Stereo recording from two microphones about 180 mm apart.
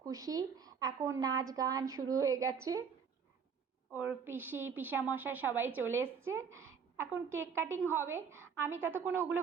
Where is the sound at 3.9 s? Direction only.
10° right (ahead or behind).